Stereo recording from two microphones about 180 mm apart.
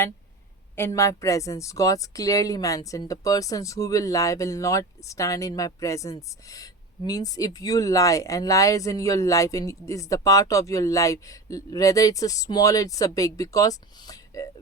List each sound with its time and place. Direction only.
0.8 s speech: 15° left (ahead or behind)